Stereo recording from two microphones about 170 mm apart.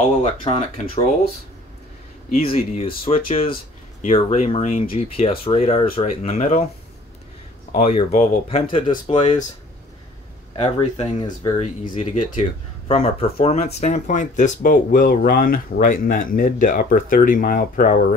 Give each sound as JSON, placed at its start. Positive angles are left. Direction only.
{"t": 0.2, "sound": "speech", "side_deg": 40}
{"t": 2.3, "sound": "speech", "side_deg": 35}
{"t": 7.7, "sound": "speech", "side_deg": 40}
{"t": 10.5, "sound": "speech", "side_deg": 35}